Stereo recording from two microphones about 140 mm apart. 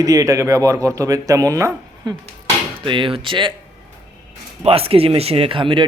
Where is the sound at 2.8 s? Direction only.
35° right (ahead or behind).